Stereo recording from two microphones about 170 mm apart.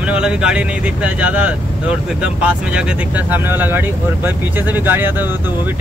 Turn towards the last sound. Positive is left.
turn(degrees=-10)  # may be behind; listen again after turning